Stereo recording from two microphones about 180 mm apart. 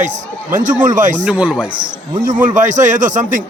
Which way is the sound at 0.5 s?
45° right (ahead or behind).